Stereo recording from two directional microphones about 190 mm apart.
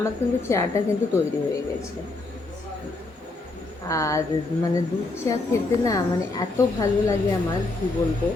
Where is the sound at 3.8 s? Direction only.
15° left (ahead or behind).